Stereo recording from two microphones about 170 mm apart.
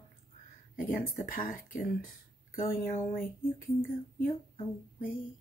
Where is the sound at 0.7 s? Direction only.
55° left (ahead or behind).